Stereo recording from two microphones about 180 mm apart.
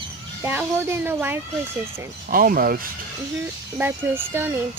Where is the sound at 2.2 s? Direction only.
50° right (ahead or behind).